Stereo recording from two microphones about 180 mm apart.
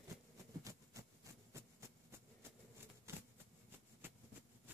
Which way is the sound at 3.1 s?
15° right (ahead or behind).